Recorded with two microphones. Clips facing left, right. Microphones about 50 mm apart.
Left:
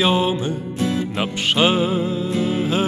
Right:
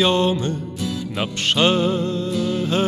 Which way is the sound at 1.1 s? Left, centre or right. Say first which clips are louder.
Left 1 dB; centre.